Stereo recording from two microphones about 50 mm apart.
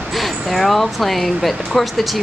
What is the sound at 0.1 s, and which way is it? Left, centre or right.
Speech, centre.